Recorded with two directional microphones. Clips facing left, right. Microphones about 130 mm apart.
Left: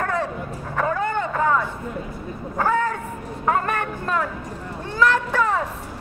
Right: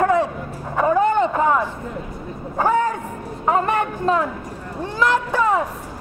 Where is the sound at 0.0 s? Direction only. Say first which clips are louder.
Right 7 dB; 15° right (ahead or behind).